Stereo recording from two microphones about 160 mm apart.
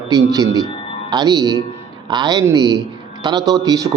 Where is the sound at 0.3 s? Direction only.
25° right (ahead or behind).